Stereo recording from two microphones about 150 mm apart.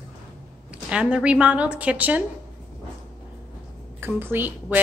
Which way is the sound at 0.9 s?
5° right (ahead or behind).